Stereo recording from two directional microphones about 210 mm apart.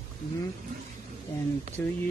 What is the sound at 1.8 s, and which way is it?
Speech, 10° left (ahead or behind).